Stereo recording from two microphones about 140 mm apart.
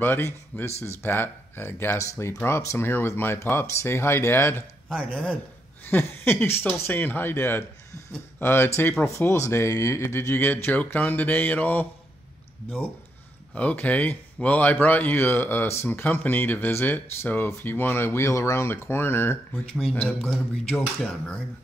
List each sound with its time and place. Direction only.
0.0 s speech: 15° left (ahead or behind)
0.7 s speech: 50° left (ahead or behind)
1.0 s speech: 15° left (ahead or behind)
4.8 s speech: centre (ahead or behind)
5.9 s speech: 15° left (ahead or behind)
13.6 s speech: 10° left (ahead or behind)